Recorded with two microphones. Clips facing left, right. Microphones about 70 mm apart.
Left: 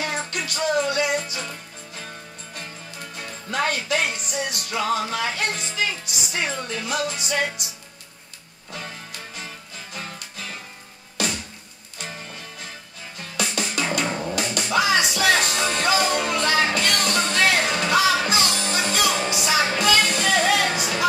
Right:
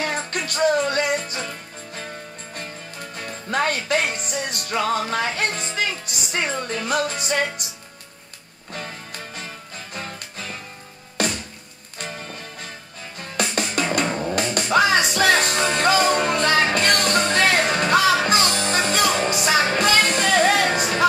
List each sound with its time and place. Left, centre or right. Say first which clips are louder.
0.5 s music: right 3 dB; right
3.2 s music: right 2 dB; right
11.2 s music: right 3 dB; right
13.2 s music: right 3 dB; right
14.0 s music: right 2 dB; centre
14.3 s music: right 4 dB; right